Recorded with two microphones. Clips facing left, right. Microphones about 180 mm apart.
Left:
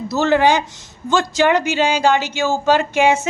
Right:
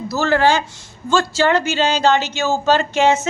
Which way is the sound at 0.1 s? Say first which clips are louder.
Left 1 dB; 20° left (ahead or behind).